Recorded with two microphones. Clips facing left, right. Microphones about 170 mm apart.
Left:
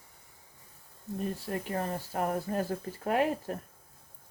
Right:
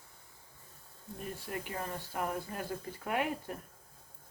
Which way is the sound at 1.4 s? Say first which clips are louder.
Left 6 dB; 40° left (ahead or behind).